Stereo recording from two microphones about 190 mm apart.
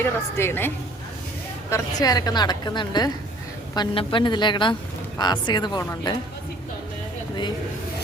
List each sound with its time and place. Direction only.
0.0 s a woman's voice: 10° left (ahead or behind)
1.7 s a woman's voice: 20° left (ahead or behind)